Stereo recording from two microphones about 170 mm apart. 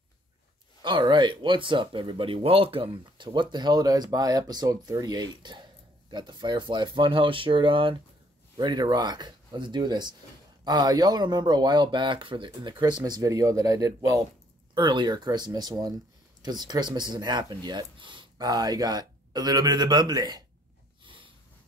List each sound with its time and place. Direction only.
0.8 s speech: 25° right (ahead or behind)
21.0 s sniff: 30° right (ahead or behind)